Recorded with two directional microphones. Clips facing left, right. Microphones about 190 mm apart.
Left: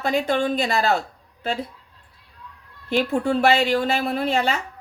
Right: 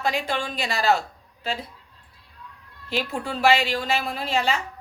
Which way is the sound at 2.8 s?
55° left (ahead or behind).